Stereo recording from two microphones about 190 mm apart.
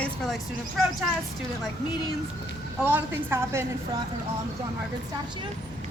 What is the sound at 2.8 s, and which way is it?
Speech, 10° right (ahead or behind).